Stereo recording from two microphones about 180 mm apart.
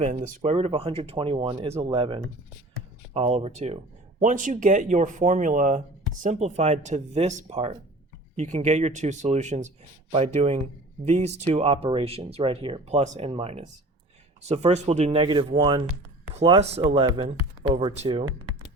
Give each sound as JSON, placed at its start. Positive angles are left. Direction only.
{"t": 0.3, "sound": "speech", "side_deg": -35}